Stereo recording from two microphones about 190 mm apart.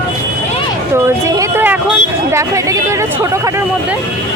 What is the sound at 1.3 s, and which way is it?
Speech, 15° right (ahead or behind).